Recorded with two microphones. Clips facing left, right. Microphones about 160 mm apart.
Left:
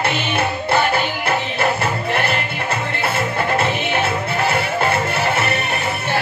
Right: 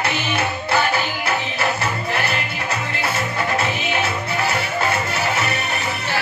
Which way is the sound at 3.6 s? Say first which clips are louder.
Left 3 dB; 55° left (ahead or behind).